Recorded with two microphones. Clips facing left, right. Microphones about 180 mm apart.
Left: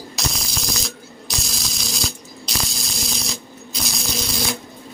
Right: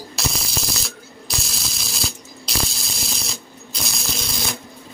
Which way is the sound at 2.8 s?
Centre (ahead or behind).